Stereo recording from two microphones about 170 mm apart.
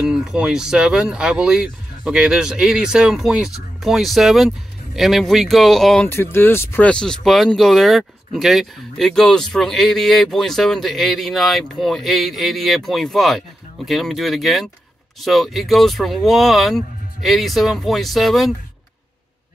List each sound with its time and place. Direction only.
0.0 s speech: 5° right (ahead or behind)
6.0 s speech: 15° left (ahead or behind)